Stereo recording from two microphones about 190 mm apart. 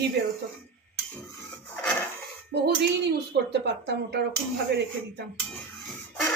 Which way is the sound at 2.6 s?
60° right (ahead or behind).